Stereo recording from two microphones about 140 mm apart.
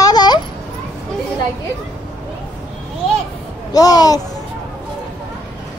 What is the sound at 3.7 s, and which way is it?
Speech, 25° left (ahead or behind).